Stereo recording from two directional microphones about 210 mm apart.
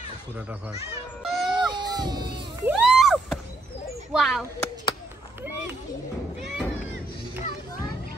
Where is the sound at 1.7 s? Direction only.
20° right (ahead or behind).